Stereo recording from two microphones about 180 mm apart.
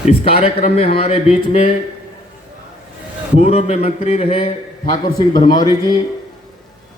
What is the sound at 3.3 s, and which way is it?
A man's voice, 35° left (ahead or behind).